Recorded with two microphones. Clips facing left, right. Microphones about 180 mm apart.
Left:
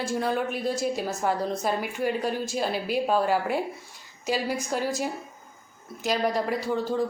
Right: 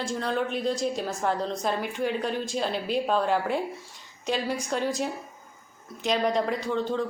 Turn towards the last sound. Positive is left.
turn(degrees=5)  # may be behind; listen again after turning